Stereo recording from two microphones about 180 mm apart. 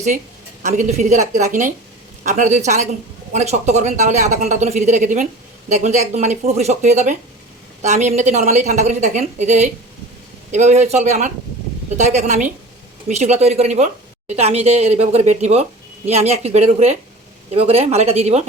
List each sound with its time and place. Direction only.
0.6 s speech: 40° right (ahead or behind)